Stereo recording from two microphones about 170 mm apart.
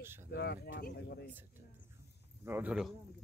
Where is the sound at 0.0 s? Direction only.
15° right (ahead or behind).